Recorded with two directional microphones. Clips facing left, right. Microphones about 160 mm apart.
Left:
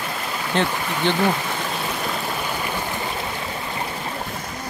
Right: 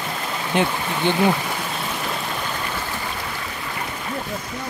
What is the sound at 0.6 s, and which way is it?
Speech, 15° right (ahead or behind).